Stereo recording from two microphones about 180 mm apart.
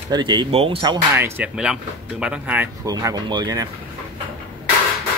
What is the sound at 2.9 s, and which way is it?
Speech, 20° right (ahead or behind).